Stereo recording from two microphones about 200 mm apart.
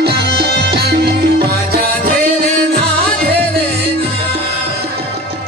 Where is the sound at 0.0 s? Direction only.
55° right (ahead or behind).